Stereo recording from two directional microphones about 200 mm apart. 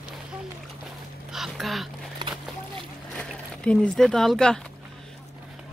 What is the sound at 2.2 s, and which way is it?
Boat, 20° right (ahead or behind).